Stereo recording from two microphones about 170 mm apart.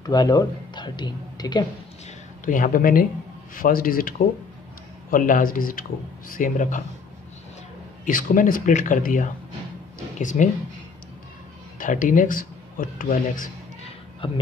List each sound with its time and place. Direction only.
0.0 s speech: 25° left (ahead or behind)
2.4 s speech: 50° left (ahead or behind)
5.1 s speech: 55° left (ahead or behind)
8.0 s speech: 55° left (ahead or behind)
11.8 s speech: 50° left (ahead or behind)
14.2 s speech: 30° left (ahead or behind)